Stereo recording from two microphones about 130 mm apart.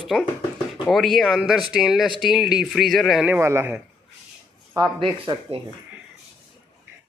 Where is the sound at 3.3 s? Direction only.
20° right (ahead or behind).